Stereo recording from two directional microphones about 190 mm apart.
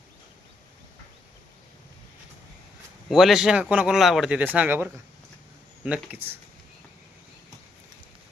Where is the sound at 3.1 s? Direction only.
Centre (ahead or behind).